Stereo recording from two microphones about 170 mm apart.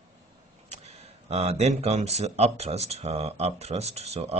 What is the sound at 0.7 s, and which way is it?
Speech, 40° right (ahead or behind).